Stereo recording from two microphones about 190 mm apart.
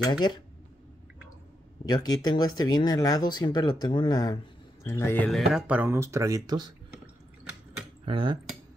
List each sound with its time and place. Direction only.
0.0 s speech: 25° left (ahead or behind)
1.9 s speech: 20° left (ahead or behind); by 6.7 s 20° right (ahead or behind)
8.0 s speech: 25° right (ahead or behind)